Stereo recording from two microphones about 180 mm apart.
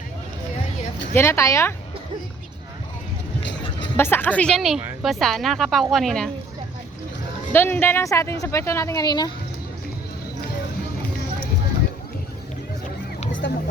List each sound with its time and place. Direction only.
1.1 s speech: 15° left (ahead or behind)
3.9 s a woman's voice: 10° left (ahead or behind)
7.5 s speech: 10° left (ahead or behind)
13.4 s speech: 75° left (ahead or behind)